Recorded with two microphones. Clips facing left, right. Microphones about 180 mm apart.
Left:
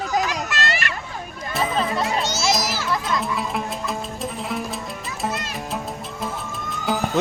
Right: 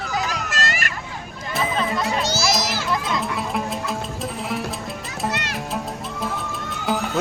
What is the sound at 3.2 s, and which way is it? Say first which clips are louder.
Music: even; centre (ahead or behind).